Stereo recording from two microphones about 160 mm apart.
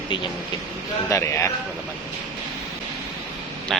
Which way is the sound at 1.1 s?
20° left (ahead or behind).